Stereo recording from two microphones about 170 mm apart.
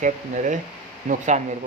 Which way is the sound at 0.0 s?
45° right (ahead or behind).